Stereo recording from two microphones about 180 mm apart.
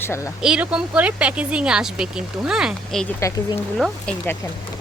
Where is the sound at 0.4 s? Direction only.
5° right (ahead or behind).